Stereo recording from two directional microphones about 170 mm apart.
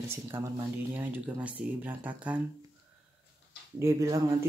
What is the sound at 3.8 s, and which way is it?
Speech, 15° right (ahead or behind).